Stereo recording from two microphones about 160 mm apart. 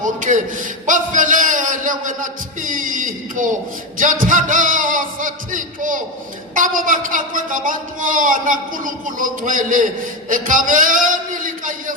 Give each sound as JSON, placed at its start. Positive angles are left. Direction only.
{"t": 0.0, "sound": "a man's voice", "side_deg": -55}